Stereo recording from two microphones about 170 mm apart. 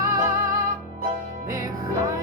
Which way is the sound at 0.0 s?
20° right (ahead or behind).